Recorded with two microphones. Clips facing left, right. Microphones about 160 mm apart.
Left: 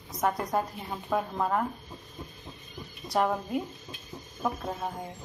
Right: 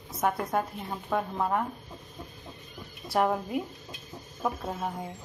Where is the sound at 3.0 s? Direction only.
5° right (ahead or behind).